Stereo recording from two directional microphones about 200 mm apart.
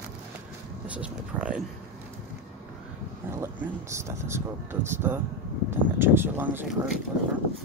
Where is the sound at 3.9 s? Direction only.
15° right (ahead or behind).